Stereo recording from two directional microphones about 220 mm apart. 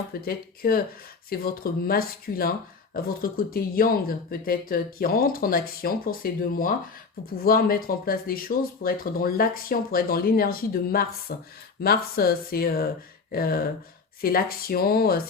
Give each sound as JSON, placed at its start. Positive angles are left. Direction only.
{"t": 0.1, "sound": "speech", "side_deg": 45}